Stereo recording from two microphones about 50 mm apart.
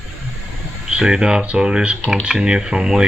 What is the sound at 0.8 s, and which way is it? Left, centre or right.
Speech, centre.